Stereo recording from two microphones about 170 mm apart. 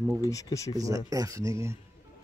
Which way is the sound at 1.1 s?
20° right (ahead or behind).